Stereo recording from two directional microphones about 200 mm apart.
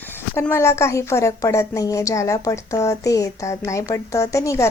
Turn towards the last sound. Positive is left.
turn(degrees=15)  # may be behind; listen again after turning